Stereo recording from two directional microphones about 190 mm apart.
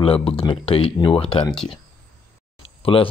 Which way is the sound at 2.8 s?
30° left (ahead or behind).